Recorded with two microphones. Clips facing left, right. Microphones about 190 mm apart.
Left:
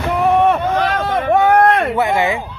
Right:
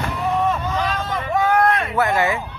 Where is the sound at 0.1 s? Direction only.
65° left (ahead or behind).